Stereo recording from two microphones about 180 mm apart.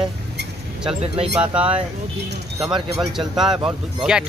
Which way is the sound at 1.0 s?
35° right (ahead or behind).